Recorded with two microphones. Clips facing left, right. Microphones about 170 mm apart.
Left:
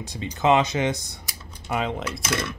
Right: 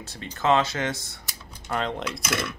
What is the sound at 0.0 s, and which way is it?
Speech, 15° left (ahead or behind).